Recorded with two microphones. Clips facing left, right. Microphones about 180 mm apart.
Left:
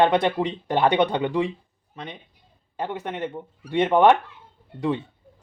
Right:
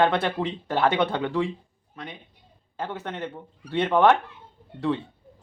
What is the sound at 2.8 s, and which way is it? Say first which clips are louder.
Speech: left 3 dB; 15° left (ahead or behind).